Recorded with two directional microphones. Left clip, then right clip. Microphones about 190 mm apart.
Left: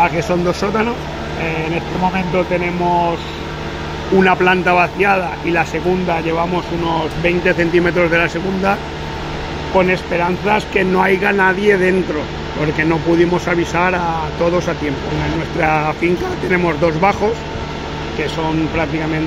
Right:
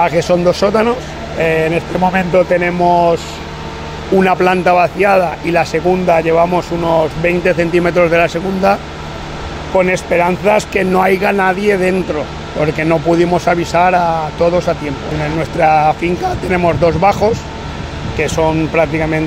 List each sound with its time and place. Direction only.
0.0 s a man's voice: 45° right (ahead or behind)
2.1 s speech: 55° right (ahead or behind)
4.2 s a man's voice: 40° right (ahead or behind)
9.8 s a man's voice: 55° right (ahead or behind)
15.6 s a man's voice: 40° right (ahead or behind)
18.8 s a man's voice: 50° right (ahead or behind)